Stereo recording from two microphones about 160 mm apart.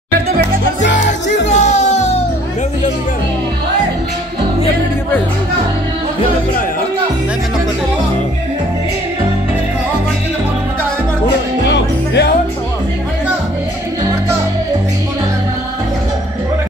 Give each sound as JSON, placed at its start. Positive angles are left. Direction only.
{"t": 0.8, "sound": "music", "side_deg": 90}
{"t": 1.5, "sound": "music", "side_deg": 45}
{"t": 11.6, "sound": "music", "side_deg": 90}